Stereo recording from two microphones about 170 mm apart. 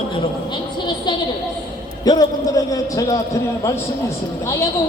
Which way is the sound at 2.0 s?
20° left (ahead or behind).